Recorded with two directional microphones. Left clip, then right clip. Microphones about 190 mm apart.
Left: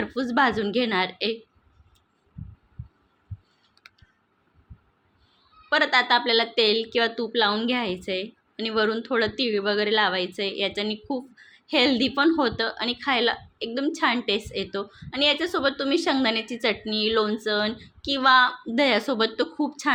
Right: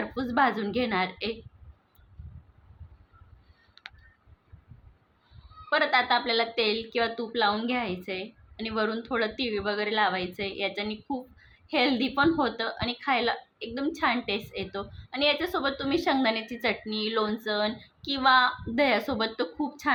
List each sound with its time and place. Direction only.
0.2 s a woman's voice: 25° left (ahead or behind)
5.6 s a woman's voice: 25° left (ahead or behind)